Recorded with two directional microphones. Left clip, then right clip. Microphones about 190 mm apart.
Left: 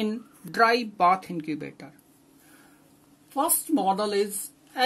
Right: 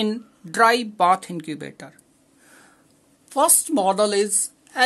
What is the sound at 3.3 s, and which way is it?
Speech, 40° right (ahead or behind).